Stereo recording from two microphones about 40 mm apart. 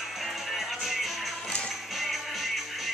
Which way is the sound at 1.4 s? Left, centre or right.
Left.